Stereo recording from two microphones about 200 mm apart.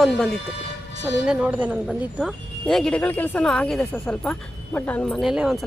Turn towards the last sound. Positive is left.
turn(degrees=0)  # may be behind; listen again after turning